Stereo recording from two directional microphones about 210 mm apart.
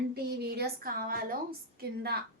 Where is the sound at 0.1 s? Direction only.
50° right (ahead or behind).